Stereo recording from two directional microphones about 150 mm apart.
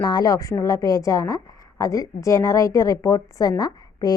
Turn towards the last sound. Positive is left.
turn(degrees=25)  # may be behind; listen again after turning